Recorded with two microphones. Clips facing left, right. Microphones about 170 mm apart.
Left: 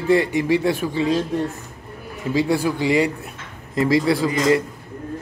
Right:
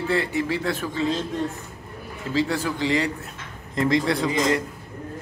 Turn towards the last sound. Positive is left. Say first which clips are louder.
# left 4 dB
turn(degrees=5)  # may be behind; listen again after turning